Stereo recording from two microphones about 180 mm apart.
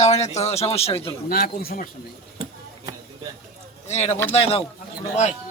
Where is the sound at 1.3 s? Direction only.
55° left (ahead or behind).